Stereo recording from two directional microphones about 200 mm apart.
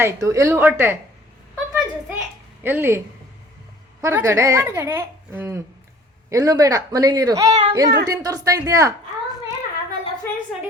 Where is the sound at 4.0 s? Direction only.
15° right (ahead or behind).